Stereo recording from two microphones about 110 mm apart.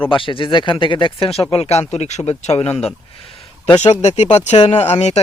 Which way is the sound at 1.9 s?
80° left.